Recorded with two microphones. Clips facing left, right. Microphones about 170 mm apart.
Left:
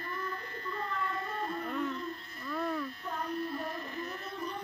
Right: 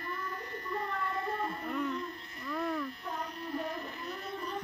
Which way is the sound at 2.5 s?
5° left (ahead or behind).